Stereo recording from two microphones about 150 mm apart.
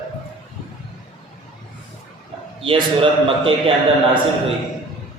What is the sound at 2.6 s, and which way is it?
Speech, 35° right (ahead or behind).